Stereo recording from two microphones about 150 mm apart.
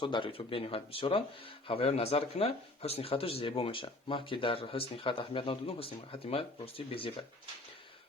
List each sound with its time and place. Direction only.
0.0 s speech: 35° left (ahead or behind)